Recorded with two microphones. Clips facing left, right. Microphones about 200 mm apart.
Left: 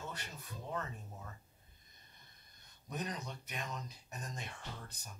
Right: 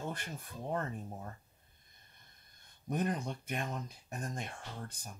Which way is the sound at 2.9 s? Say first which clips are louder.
Right 7 dB; 55° right (ahead or behind).